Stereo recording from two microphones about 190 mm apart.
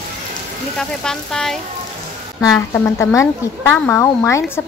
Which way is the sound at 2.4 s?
15° left (ahead or behind).